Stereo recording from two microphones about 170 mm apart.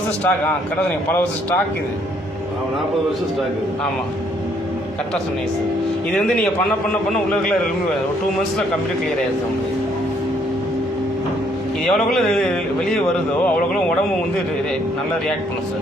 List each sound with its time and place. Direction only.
0.3 s a man's voice: 5° left (ahead or behind)
6.1 s a man's voice: 5° left (ahead or behind)
11.9 s a man's voice: centre (ahead or behind)